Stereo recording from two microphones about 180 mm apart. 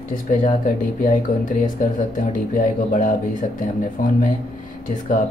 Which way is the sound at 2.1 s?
45° left (ahead or behind).